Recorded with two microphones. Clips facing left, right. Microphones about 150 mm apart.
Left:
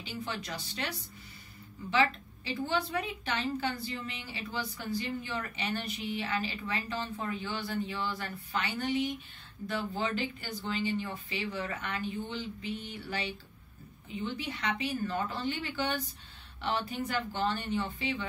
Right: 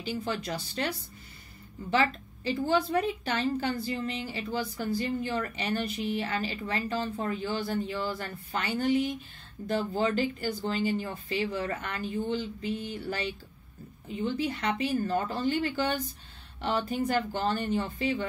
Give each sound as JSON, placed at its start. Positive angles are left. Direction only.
{"t": 0.0, "sound": "a woman's voice", "side_deg": -40}